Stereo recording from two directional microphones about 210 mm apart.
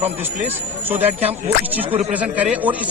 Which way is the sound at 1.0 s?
30° right (ahead or behind).